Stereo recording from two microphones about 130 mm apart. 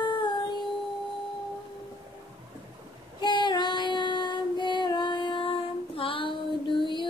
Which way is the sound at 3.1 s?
35° left (ahead or behind).